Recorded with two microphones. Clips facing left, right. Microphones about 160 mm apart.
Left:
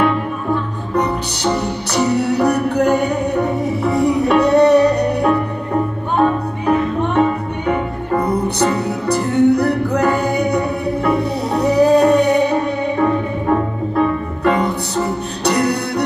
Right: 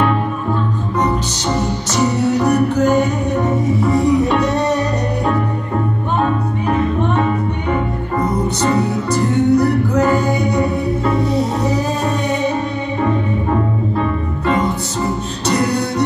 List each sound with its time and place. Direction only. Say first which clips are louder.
2.2 s music: right 1 dB; 65° left (ahead or behind)
9.1 s music: left 1 dB; 65° left (ahead or behind)